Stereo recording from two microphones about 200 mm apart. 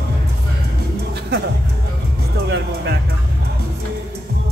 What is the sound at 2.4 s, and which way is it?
Music, 55° right (ahead or behind).